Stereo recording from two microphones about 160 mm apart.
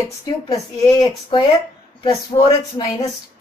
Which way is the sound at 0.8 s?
25° left (ahead or behind).